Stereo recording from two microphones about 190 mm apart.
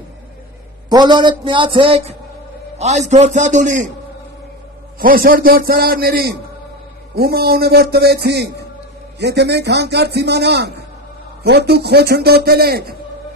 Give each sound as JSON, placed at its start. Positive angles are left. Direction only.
{"t": 0.8, "sound": "a man's voice", "side_deg": -25}
{"t": 1.4, "sound": "music", "side_deg": -25}
{"t": 2.8, "sound": "a man's voice", "side_deg": -35}
{"t": 4.9, "sound": "a man's voice", "side_deg": -50}